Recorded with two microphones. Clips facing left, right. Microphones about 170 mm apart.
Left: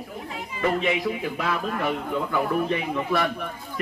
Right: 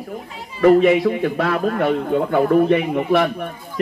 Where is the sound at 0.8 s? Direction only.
60° right (ahead or behind).